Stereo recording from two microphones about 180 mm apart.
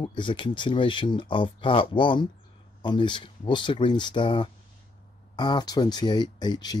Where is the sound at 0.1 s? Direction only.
25° left (ahead or behind).